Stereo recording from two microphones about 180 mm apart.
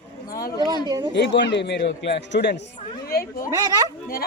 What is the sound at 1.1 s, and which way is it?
A man's voice, 75° left (ahead or behind).